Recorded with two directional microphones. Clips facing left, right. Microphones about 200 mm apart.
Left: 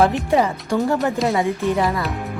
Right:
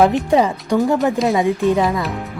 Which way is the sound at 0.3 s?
15° right (ahead or behind).